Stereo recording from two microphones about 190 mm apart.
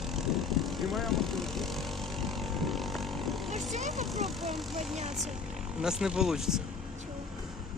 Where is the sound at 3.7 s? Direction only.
40° right (ahead or behind).